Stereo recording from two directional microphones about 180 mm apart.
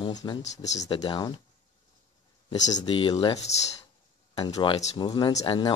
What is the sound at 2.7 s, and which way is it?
Speech, 30° left (ahead or behind).